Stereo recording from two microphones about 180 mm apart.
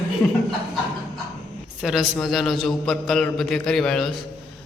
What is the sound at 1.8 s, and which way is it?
A man's voice, centre (ahead or behind).